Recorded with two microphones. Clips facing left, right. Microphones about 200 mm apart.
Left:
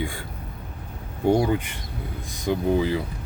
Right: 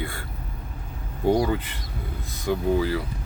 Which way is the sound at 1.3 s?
15° left (ahead or behind).